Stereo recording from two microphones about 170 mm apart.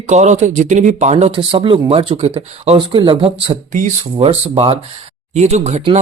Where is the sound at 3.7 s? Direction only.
45° right (ahead or behind).